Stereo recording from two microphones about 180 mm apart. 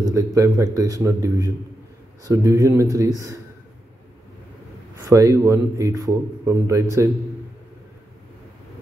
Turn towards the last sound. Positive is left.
turn(degrees=-15)  # may be behind; listen again after turning